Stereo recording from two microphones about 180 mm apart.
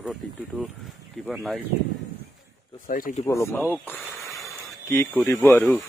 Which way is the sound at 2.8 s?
50° left (ahead or behind).